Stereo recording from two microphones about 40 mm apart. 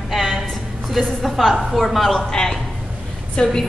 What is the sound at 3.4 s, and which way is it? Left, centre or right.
Speech, left.